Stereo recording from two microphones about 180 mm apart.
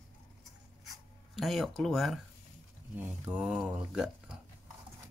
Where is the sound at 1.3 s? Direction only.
Centre (ahead or behind).